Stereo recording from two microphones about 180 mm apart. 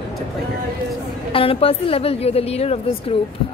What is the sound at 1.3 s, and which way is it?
A woman's voice, 30° left (ahead or behind).